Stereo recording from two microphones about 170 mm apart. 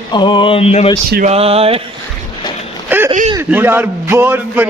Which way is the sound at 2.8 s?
10° right (ahead or behind).